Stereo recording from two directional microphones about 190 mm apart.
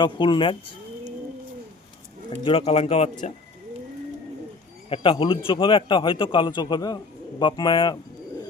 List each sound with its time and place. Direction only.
0.0 s a man's voice: 25° left (ahead or behind)
2.4 s speech: 30° left (ahead or behind)
4.9 s a man's voice: 30° left (ahead or behind)